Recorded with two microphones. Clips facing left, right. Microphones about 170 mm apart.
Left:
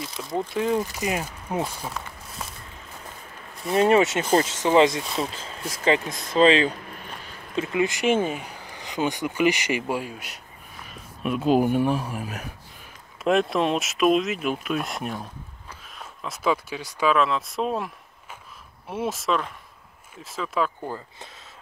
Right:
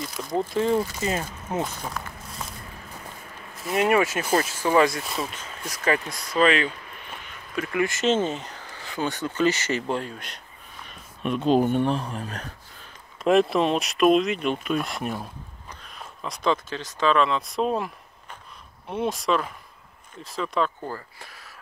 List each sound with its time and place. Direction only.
0.0 s speech: centre (ahead or behind)
0.8 s speech: 15° left (ahead or behind)
3.7 s speech: 25° left (ahead or behind)
5.0 s speech: centre (ahead or behind)
5.7 s speech: 25° left (ahead or behind); by 20.9 s 5° left (ahead or behind)